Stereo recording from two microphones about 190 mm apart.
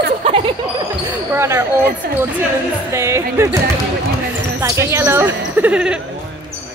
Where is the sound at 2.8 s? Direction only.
15° right (ahead or behind).